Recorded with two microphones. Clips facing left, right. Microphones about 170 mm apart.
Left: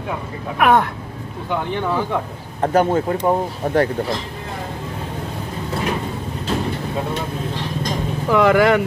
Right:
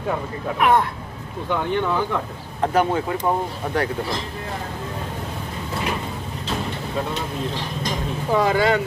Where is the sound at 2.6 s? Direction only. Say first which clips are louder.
Left 3 dB; 45° left (ahead or behind).